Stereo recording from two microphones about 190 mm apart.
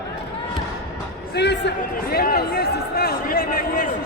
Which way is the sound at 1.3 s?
60° left (ahead or behind).